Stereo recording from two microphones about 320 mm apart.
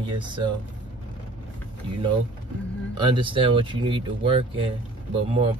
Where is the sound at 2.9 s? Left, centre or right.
Centre.